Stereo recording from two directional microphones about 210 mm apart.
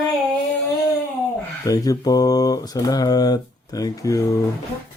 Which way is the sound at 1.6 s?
15° left (ahead or behind).